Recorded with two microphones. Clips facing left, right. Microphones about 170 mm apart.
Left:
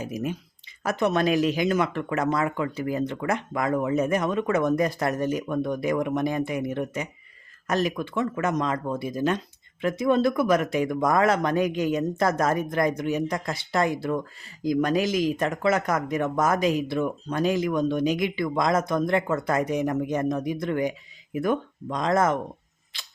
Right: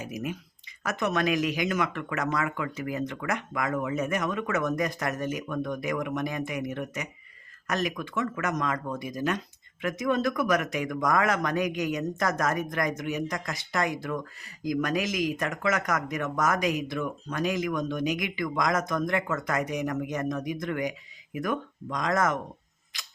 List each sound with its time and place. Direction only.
0.0 s speech: 30° left (ahead or behind)
22.9 s tick-tock: 30° left (ahead or behind)